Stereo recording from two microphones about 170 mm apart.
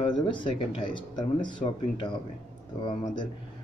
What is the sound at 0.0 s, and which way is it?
Speech, 30° left (ahead or behind).